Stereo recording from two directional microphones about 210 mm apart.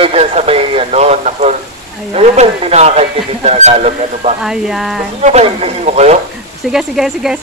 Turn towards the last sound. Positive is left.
turn(degrees=0)  # may be behind; listen again after turning